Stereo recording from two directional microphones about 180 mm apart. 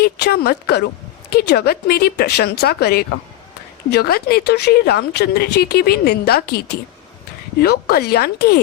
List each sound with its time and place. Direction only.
0.0 s speech: 60° left (ahead or behind)
7.6 s speech: 60° left (ahead or behind)